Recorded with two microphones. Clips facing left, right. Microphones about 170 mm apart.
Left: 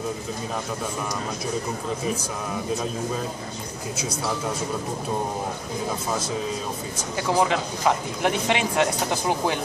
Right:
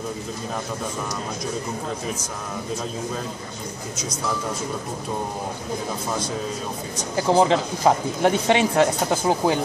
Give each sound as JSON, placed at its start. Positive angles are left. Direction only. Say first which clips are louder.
{"t": 7.2, "sound": "speech", "louder": "right 4 dB", "side_deg": -30}